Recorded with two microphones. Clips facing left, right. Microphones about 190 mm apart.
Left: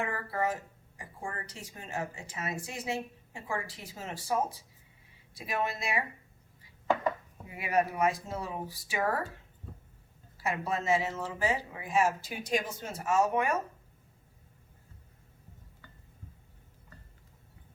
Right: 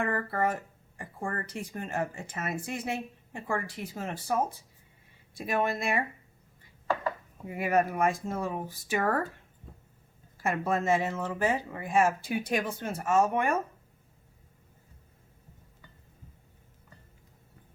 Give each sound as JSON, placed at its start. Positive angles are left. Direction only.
{"t": 0.0, "sound": "speech", "side_deg": -55}
{"t": 7.4, "sound": "speech", "side_deg": -50}
{"t": 10.6, "sound": "speech", "side_deg": -50}